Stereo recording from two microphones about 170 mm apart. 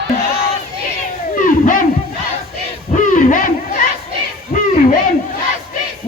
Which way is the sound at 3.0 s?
50° left (ahead or behind).